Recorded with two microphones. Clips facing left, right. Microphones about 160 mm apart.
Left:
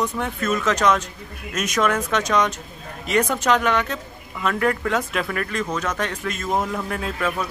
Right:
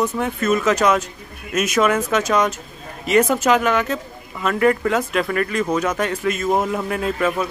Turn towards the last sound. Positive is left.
turn(degrees=-5)  # may be behind; listen again after turning